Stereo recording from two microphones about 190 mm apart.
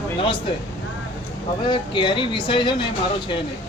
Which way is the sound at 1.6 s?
25° left (ahead or behind).